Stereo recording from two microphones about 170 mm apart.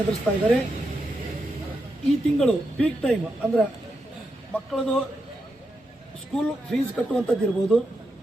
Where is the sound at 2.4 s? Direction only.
5° left (ahead or behind).